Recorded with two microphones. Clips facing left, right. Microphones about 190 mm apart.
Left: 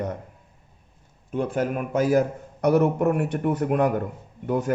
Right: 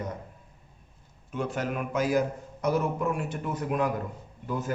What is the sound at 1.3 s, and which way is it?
A man's voice, 45° left (ahead or behind).